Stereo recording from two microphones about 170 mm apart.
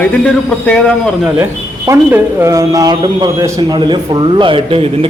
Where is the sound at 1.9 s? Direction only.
15° right (ahead or behind); by 4.9 s 30° right (ahead or behind).